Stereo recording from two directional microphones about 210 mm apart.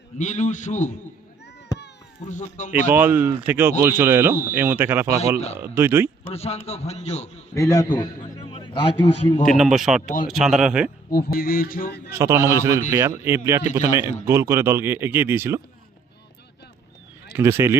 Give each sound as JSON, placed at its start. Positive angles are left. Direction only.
{"t": 0.2, "sound": "a man's voice", "side_deg": 35}
{"t": 2.2, "sound": "a man's voice", "side_deg": 35}
{"t": 2.9, "sound": "speech", "side_deg": -10}
{"t": 6.3, "sound": "a man's voice", "side_deg": 30}
{"t": 7.5, "sound": "a man's voice", "side_deg": 15}
{"t": 9.5, "sound": "speech", "side_deg": 0}
{"t": 11.1, "sound": "a sound", "side_deg": 45}
{"t": 12.1, "sound": "speech", "side_deg": -15}
{"t": 17.3, "sound": "speech", "side_deg": -10}